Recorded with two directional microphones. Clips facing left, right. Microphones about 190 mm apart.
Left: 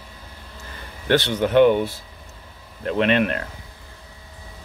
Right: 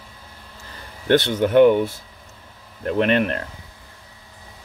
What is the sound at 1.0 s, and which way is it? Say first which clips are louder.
Speech: right 2 dB; 50° right (ahead or behind).